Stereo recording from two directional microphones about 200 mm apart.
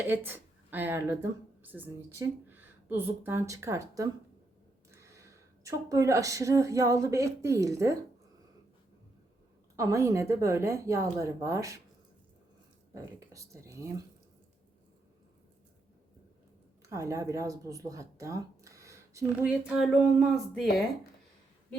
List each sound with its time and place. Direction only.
0.3 s a woman's voice: 10° right (ahead or behind)
9.7 s speech: 15° right (ahead or behind)
12.9 s speech: 15° right (ahead or behind)
16.9 s speech: 15° right (ahead or behind)